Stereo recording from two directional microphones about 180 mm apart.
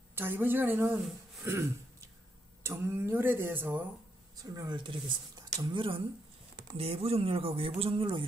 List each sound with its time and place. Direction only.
0.1 s speech: 10° right (ahead or behind); by 8.3 s 30° right (ahead or behind)